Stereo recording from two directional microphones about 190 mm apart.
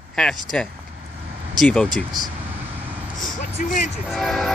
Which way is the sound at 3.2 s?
45° left (ahead or behind).